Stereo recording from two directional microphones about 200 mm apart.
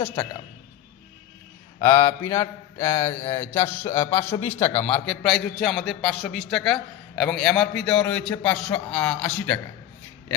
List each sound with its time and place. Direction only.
1.8 s a man's voice: 25° left (ahead or behind)
2.0 s mantra: 15° left (ahead or behind)
4.1 s a man's voice: 10° left (ahead or behind)